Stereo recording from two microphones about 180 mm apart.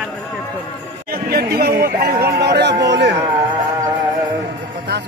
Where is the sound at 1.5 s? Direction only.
60° right (ahead or behind).